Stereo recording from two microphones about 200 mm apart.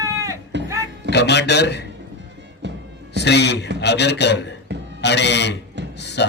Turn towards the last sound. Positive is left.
turn(degrees=60)  # may be behind; listen again after turning